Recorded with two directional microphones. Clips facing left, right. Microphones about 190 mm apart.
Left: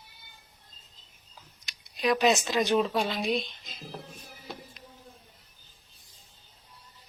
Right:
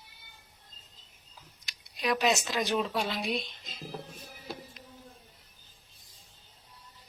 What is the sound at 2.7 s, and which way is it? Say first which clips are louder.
Speech: left 5 dB; 25° left (ahead or behind).